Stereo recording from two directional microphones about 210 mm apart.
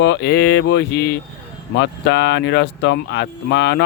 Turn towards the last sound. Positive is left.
turn(degrees=55)  # may be behind; listen again after turning